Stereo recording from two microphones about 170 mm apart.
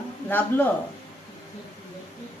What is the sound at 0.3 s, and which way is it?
Speech, 10° left (ahead or behind).